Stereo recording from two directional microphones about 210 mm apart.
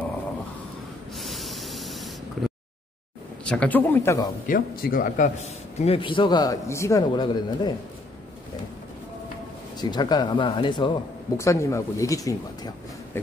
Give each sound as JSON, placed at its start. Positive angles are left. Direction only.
{"t": 1.1, "sound": "snort", "side_deg": 0}
{"t": 3.4, "sound": "speech", "side_deg": 5}
{"t": 4.5, "sound": "speech", "side_deg": 45}
{"t": 5.8, "sound": "a man's voice", "side_deg": 25}
{"t": 9.8, "sound": "a man's voice", "side_deg": 20}